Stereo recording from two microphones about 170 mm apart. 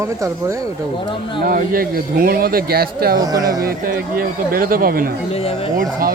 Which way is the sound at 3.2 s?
20° right (ahead or behind).